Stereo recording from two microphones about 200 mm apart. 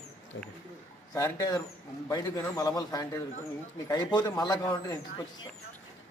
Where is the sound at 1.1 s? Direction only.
15° left (ahead or behind).